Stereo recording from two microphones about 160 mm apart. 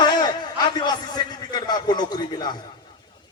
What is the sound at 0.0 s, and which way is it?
A man's voice, 25° left (ahead or behind).